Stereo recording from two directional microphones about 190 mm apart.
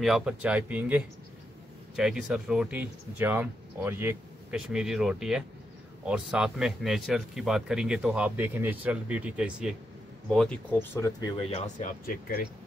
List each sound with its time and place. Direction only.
0.0 s speech: 5° right (ahead or behind); by 11.6 s 25° left (ahead or behind)
11.6 s speech: 45° left (ahead or behind)